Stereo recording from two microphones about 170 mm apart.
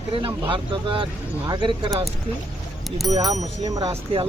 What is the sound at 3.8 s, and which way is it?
Speech, 30° right (ahead or behind).